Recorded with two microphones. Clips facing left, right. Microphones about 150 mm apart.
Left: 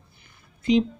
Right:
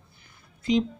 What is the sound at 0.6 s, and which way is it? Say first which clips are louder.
Speech: left 3 dB; 20° left (ahead or behind).